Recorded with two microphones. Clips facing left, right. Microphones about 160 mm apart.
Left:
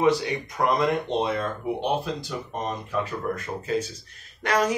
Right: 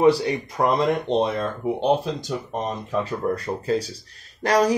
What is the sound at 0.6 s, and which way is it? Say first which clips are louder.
Speech: right 2 dB; 20° right (ahead or behind).